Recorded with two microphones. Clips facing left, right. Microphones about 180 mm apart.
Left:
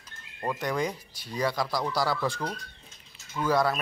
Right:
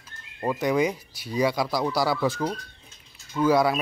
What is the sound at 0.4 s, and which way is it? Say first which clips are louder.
Speech: right 6 dB; 10° right (ahead or behind).